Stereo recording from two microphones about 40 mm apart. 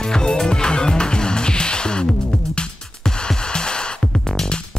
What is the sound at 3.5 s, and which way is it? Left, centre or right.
Music, left.